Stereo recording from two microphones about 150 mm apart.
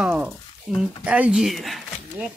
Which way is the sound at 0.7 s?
5° right (ahead or behind).